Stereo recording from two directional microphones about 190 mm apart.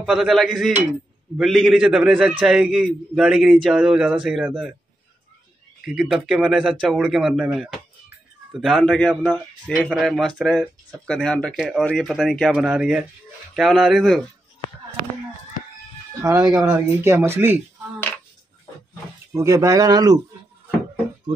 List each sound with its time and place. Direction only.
0.0 s a man's voice: 5° right (ahead or behind)
5.9 s a man's voice: 5° right (ahead or behind)
16.2 s speech: 15° right (ahead or behind)
19.3 s speech: 15° right (ahead or behind)